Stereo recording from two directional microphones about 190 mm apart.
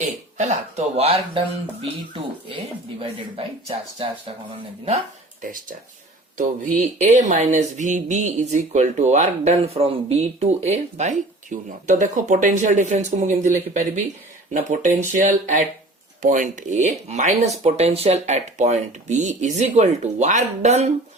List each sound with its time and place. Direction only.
0.0 s cough: 35° right (ahead or behind)
0.9 s speech: 30° right (ahead or behind)
3.0 s speech: 30° right (ahead or behind)
5.4 s speech: 45° right (ahead or behind)